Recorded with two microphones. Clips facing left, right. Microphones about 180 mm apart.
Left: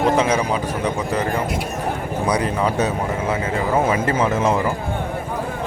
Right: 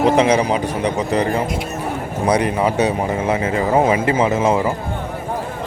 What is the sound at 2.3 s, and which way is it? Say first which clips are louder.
Speech: right 4 dB; 15° right (ahead or behind).